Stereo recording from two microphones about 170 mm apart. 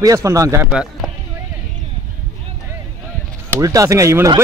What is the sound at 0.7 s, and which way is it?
Speech, 5° right (ahead or behind).